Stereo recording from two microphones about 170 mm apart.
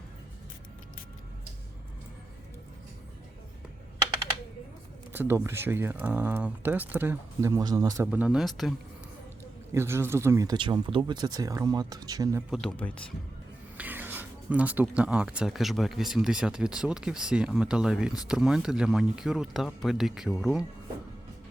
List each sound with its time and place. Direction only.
5.1 s speech: 10° right (ahead or behind)
8.0 s speech: 5° right (ahead or behind)
9.7 s speech: 15° right (ahead or behind)
12.7 s speech: 10° left (ahead or behind)
13.7 s speech: 10° right (ahead or behind)